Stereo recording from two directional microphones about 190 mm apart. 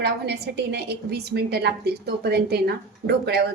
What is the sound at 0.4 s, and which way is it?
A woman's voice, 60° right (ahead or behind).